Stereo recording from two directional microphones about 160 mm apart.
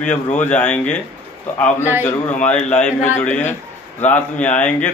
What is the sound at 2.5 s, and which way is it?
A man's voice, 10° left (ahead or behind).